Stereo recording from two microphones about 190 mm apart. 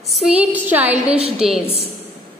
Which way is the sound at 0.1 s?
10° right (ahead or behind).